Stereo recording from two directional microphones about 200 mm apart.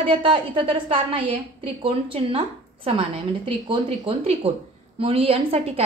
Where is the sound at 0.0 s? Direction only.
25° right (ahead or behind).